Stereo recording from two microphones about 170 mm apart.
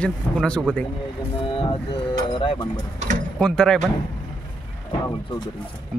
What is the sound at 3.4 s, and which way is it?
Speech, 5° left (ahead or behind).